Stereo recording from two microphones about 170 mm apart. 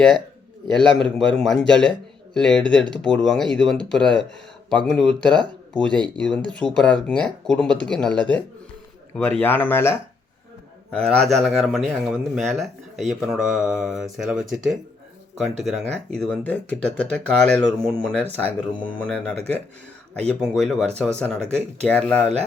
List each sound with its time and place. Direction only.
1.0 s speech: 5° left (ahead or behind)